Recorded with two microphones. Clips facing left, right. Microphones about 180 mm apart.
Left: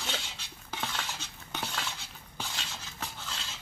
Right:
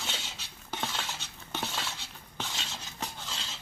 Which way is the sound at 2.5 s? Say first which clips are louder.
Right 1 dB; 10° right (ahead or behind).